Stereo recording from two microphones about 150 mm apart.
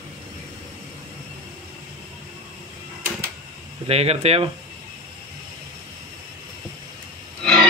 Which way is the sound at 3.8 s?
40° right (ahead or behind).